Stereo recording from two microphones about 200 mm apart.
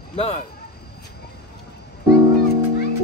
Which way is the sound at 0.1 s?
30° left (ahead or behind).